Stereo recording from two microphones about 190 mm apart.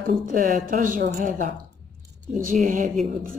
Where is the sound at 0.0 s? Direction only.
45° right (ahead or behind).